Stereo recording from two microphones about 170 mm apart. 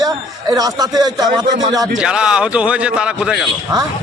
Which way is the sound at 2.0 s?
5° right (ahead or behind).